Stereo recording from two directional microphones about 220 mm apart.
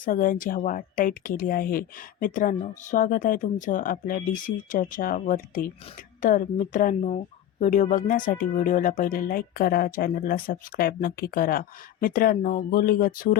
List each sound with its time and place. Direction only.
0.0 s speech: 40° left (ahead or behind)